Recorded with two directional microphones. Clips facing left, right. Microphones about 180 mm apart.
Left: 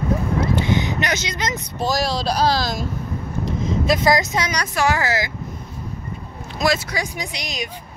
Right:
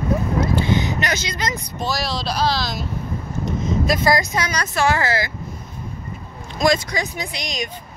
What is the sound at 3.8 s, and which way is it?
Speech, 25° left (ahead or behind).